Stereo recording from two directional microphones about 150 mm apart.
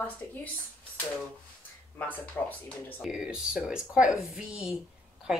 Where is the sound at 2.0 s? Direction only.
10° left (ahead or behind).